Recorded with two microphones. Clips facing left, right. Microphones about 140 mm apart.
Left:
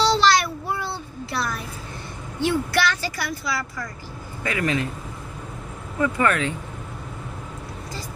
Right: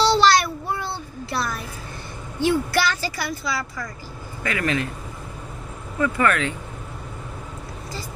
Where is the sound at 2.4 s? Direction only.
Centre (ahead or behind).